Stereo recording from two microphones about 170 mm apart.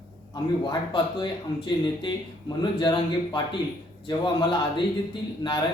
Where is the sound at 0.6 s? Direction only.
25° left (ahead or behind).